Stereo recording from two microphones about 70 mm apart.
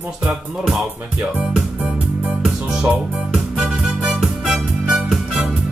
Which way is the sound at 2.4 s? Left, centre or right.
Centre.